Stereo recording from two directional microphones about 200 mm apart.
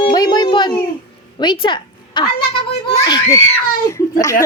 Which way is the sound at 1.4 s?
20° left (ahead or behind).